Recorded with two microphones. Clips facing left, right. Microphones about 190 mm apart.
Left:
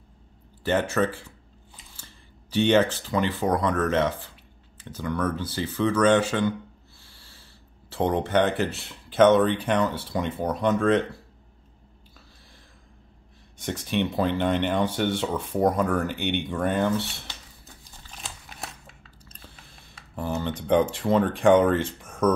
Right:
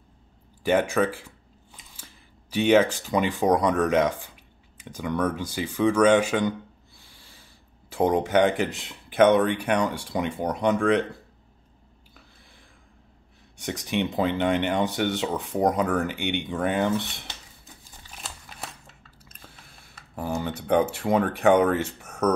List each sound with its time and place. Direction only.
0.7 s speech: 10° right (ahead or behind)
2.5 s speech: 10° right (ahead or behind)
7.9 s speech: 10° right (ahead or behind)
13.6 s speech: 15° right (ahead or behind)
18.1 s scissors: 10° right (ahead or behind)
20.2 s a sound: 10° right (ahead or behind)
21.3 s speech: 10° right (ahead or behind)
22.0 s a sound: 70° right (ahead or behind)